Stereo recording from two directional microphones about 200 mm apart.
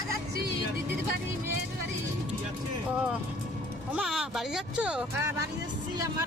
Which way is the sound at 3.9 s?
5° right (ahead or behind).